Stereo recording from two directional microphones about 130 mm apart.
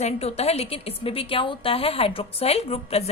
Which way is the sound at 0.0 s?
55° left (ahead or behind).